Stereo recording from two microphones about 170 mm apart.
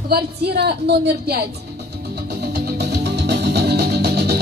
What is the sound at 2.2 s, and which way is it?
Music, 70° right (ahead or behind).